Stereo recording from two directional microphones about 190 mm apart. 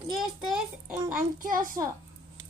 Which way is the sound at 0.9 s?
45° right (ahead or behind).